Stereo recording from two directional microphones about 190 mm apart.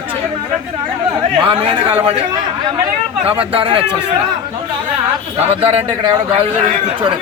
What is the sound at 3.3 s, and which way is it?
Speech, 30° right (ahead or behind).